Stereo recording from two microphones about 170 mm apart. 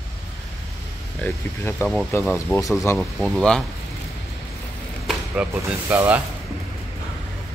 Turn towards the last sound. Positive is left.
turn(degrees=-10)  # may be behind; listen again after turning